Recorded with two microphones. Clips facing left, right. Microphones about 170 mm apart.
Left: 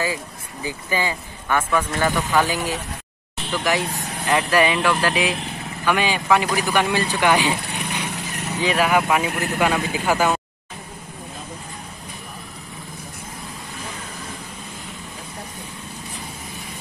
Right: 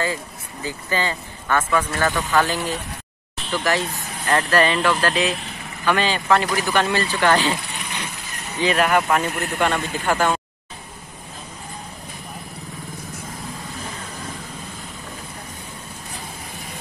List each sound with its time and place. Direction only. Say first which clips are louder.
0.0 s speech: even; 10° left (ahead or behind)
8.6 s speech: right 1 dB; 5° left (ahead or behind)